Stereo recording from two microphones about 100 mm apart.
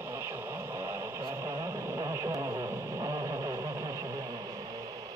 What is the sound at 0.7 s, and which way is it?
Radio, 25° right (ahead or behind).